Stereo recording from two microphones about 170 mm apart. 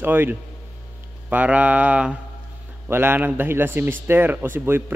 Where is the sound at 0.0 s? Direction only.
10° right (ahead or behind).